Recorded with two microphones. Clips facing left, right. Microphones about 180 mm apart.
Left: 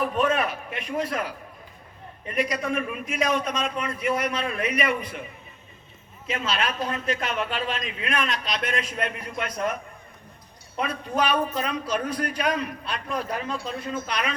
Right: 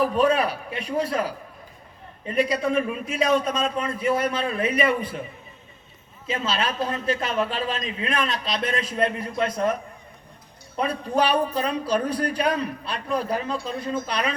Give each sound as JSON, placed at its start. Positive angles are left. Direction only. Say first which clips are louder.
{"t": 0.0, "sound": "speech", "louder": "right 3 dB", "side_deg": -35}
{"t": 6.2, "sound": "speech", "louder": "right 1 dB", "side_deg": -30}
{"t": 10.8, "sound": "speech", "louder": "right 3 dB", "side_deg": -35}